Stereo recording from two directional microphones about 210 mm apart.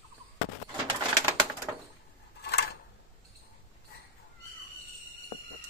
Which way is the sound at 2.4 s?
50° left (ahead or behind).